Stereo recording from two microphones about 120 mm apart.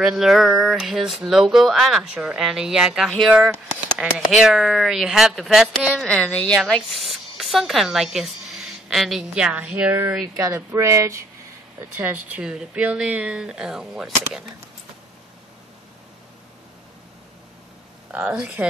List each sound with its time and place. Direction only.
0.0 s speech: 5° right (ahead or behind)
6.0 s speech: 10° left (ahead or behind)
6.6 s speech: centre (ahead or behind)
10.3 s speech: 25° right (ahead or behind); by 14.4 s 5° right (ahead or behind)
18.1 s speech: 10° right (ahead or behind)